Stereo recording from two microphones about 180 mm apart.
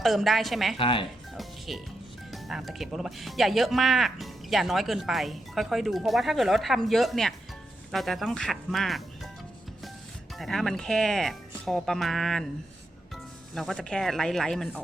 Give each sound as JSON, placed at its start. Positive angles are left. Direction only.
{"t": 0.0, "sound": "speech", "side_deg": 0}
{"t": 0.8, "sound": "speech", "side_deg": 30}
{"t": 1.4, "sound": "music", "side_deg": 0}
{"t": 2.3, "sound": "speech", "side_deg": 0}
{"t": 10.3, "sound": "speech", "side_deg": 0}
{"t": 13.5, "sound": "speech", "side_deg": 0}